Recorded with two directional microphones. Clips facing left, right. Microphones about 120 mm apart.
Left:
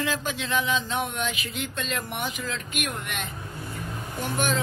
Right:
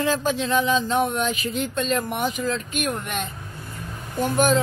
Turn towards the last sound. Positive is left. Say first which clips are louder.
# right 7 dB
turn(degrees=-45)  # may be behind; listen again after turning